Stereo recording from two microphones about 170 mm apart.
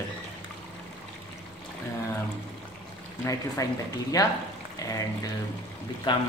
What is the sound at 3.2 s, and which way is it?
Speech, 20° left (ahead or behind).